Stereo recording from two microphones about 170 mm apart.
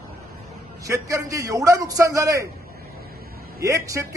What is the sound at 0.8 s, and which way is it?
A man's voice, 20° right (ahead or behind).